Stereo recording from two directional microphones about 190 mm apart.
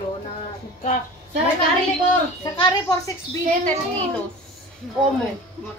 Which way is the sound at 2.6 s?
20° left (ahead or behind).